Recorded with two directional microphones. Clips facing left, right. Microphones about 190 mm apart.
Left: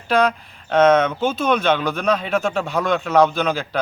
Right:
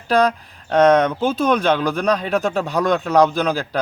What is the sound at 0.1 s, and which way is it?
Speech, 35° right (ahead or behind).